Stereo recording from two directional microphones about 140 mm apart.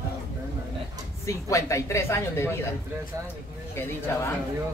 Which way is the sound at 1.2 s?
20° left (ahead or behind).